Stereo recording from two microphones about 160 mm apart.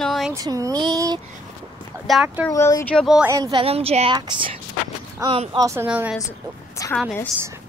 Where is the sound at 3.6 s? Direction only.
40° right (ahead or behind).